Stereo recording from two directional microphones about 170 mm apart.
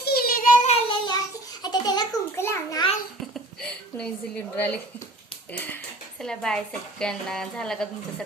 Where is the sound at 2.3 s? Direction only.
15° left (ahead or behind).